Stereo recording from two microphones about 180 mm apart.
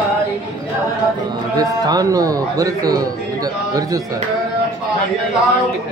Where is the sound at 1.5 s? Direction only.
20° right (ahead or behind).